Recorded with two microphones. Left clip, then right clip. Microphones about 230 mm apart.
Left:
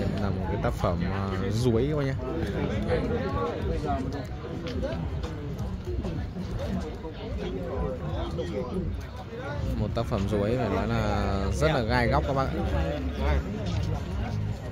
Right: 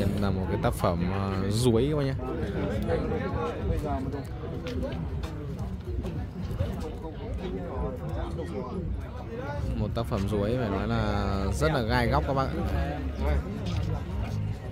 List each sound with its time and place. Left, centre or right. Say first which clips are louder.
0.2 s speech: right 1 dB; centre
9.8 s speech: left 2 dB; centre